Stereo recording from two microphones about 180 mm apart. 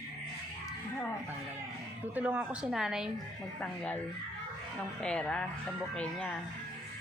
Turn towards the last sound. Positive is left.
turn(degrees=5)  # may be behind; listen again after turning